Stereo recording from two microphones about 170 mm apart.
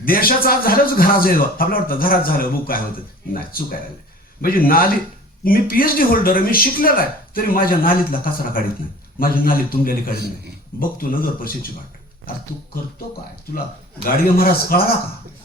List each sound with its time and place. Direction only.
0.0 s a man's voice: 60° left (ahead or behind)
14.0 s a man's voice: 60° left (ahead or behind)